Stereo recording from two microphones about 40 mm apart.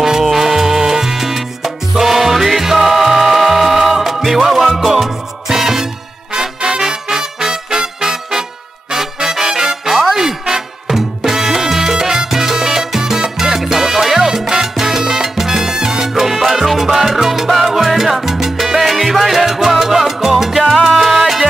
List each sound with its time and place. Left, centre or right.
0.0 s salsa music: centre
6.3 s music: centre
13.8 s salsa music: centre
21.0 s music: centre